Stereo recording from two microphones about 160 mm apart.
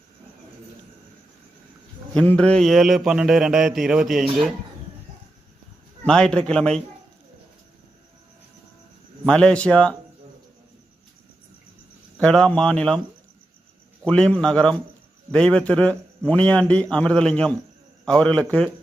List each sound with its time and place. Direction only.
2.1 s mantra: 5° left (ahead or behind)
6.1 s mantra: 5° left (ahead or behind)
9.2 s a man's voice: 5° left (ahead or behind)
12.2 s mantra: 5° left (ahead or behind)
14.0 s mantra: 5° left (ahead or behind)
15.3 s a man's voice: 5° left (ahead or behind)
16.9 s mantra: 5° left (ahead or behind)
18.0 s a man's voice: 5° left (ahead or behind)